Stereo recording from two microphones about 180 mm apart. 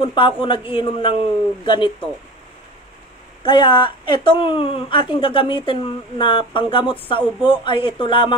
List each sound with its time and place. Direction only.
0.0 s speech: 30° left (ahead or behind)
3.4 s speech: 25° left (ahead or behind)